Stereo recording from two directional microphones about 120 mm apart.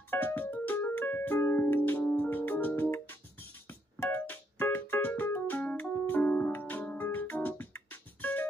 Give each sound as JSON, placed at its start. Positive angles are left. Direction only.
{"t": 0.1, "sound": "keyboard", "side_deg": 15}